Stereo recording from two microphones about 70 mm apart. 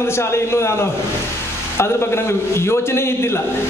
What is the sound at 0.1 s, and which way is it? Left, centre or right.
A man's voice, left.